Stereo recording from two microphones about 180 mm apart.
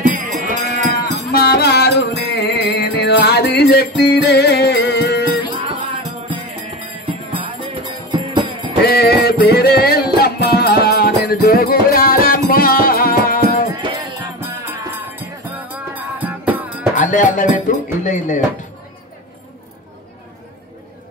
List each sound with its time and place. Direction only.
0.0 s sheep: 45° right (ahead or behind)
1.3 s music: 60° left (ahead or behind)
7.1 s music: 30° right (ahead or behind)
8.8 s music: 60° left (ahead or behind)
13.7 s music: 25° right (ahead or behind)
14.4 s music: 15° right (ahead or behind)
16.9 s music: 45° left (ahead or behind)
18.0 s speech: 45° left (ahead or behind)